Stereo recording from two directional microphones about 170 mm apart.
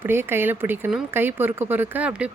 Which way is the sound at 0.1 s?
15° right (ahead or behind).